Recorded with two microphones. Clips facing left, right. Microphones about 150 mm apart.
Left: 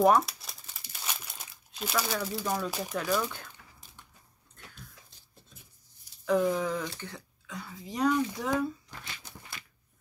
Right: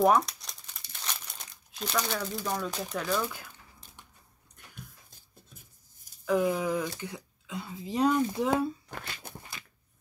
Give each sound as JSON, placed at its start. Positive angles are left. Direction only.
{"t": 0.0, "sound": "crumpling", "side_deg": 0}
{"t": 6.2, "sound": "speech", "side_deg": -5}
{"t": 8.9, "sound": "a sound", "side_deg": -55}